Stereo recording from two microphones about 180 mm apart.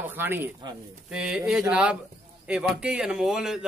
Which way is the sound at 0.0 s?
10° right (ahead or behind).